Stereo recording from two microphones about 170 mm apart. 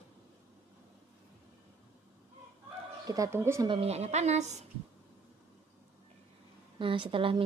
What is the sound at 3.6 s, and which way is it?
Speech, 35° right (ahead or behind).